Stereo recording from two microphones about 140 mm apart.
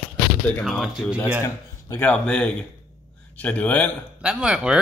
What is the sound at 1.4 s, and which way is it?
Speech, 20° left (ahead or behind).